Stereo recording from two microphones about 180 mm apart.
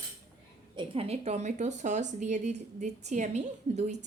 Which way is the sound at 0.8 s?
35° right (ahead or behind).